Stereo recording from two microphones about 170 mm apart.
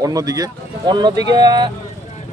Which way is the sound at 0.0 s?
20° right (ahead or behind).